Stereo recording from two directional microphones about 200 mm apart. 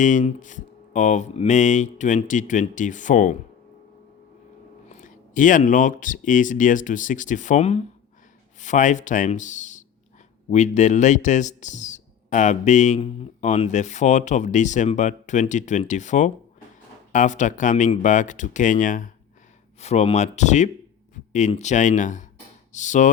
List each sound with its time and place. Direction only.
0.0 s speech: 40° left (ahead or behind)
4.9 s speech: 40° left (ahead or behind)